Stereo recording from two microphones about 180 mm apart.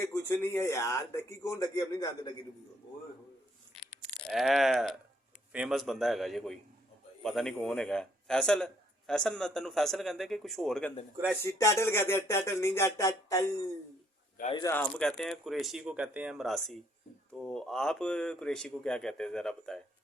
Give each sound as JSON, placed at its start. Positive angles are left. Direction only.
{"t": 0.0, "sound": "a man's voice", "side_deg": 15}
{"t": 4.3, "sound": "a man's voice", "side_deg": 0}
{"t": 11.4, "sound": "a man's voice", "side_deg": 15}
{"t": 14.5, "sound": "a man's voice", "side_deg": 15}